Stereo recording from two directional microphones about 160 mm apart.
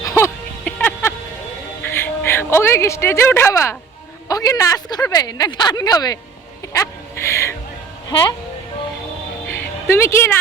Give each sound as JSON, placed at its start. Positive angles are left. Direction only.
{"t": 0.0, "sound": "music", "side_deg": 20}
{"t": 1.8, "sound": "speech", "side_deg": 15}
{"t": 9.5, "sound": "music", "side_deg": 15}